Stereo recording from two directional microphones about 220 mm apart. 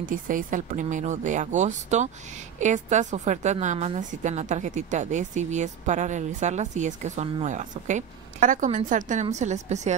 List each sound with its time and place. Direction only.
0.0 s a woman's voice: 35° right (ahead or behind)